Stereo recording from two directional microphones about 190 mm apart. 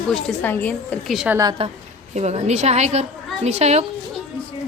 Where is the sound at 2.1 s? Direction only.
35° right (ahead or behind).